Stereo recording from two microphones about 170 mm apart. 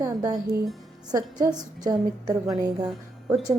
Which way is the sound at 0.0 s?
20° right (ahead or behind).